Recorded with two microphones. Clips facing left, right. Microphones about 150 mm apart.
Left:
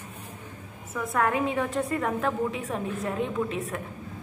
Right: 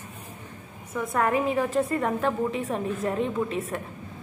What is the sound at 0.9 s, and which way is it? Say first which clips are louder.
A woman's voice: right 1 dB; centre (ahead or behind).